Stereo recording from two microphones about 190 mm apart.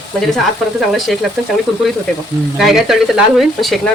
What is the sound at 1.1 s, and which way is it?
Speech, centre (ahead or behind).